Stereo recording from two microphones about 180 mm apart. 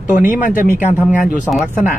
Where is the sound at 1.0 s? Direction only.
Centre (ahead or behind).